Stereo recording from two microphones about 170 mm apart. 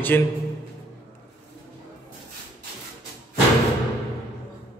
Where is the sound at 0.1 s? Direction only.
10° left (ahead or behind).